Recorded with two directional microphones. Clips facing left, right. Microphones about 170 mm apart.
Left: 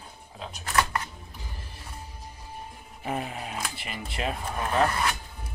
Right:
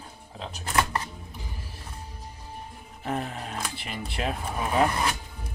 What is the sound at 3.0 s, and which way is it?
Speech, 10° left (ahead or behind).